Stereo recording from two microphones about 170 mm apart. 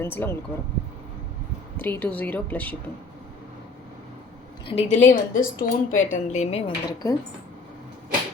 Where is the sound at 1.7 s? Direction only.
10° left (ahead or behind).